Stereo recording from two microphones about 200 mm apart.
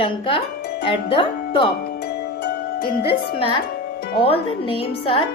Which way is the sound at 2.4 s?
50° left (ahead or behind).